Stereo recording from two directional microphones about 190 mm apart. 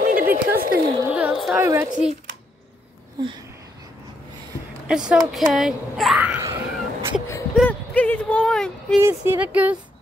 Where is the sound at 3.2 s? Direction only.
15° right (ahead or behind).